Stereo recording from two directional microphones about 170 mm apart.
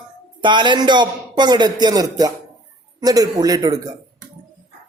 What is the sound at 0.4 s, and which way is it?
A man's voice, 25° right (ahead or behind).